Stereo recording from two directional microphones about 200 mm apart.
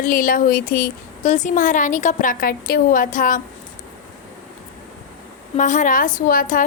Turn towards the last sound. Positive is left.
turn(degrees=45)  # may be behind; listen again after turning